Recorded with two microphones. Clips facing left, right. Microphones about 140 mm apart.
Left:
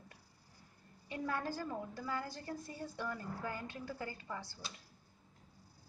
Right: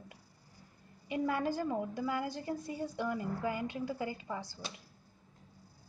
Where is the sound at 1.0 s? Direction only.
15° right (ahead or behind).